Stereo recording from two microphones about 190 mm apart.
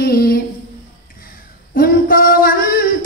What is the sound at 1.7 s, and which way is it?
Male singing, 50° left (ahead or behind).